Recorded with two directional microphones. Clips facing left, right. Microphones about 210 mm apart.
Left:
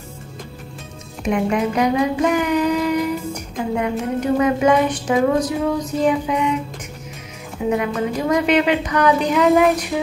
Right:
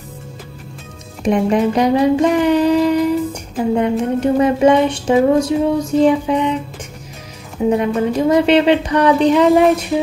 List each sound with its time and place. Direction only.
1.2 s music: 35° right (ahead or behind)
7.7 s music: 30° right (ahead or behind)